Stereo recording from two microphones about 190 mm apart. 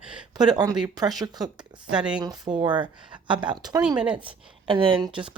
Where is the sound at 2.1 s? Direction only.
20° right (ahead or behind).